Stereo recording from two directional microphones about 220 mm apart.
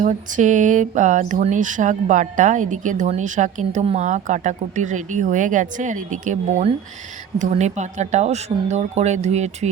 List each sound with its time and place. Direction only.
0.0 s speech: 35° right (ahead or behind)